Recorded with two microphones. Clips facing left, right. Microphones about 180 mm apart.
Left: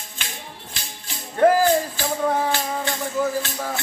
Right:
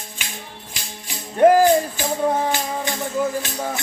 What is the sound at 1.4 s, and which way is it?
Music, 15° right (ahead or behind).